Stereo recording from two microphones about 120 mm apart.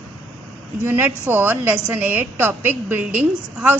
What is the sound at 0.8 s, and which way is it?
A woman's voice, 15° right (ahead or behind).